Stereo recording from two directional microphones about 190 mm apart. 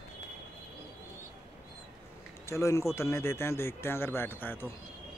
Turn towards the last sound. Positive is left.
turn(degrees=10)  # may be behind; listen again after turning